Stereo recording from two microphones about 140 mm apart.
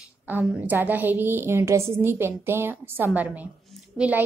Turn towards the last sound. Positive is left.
turn(degrees=-10)  # may be behind; listen again after turning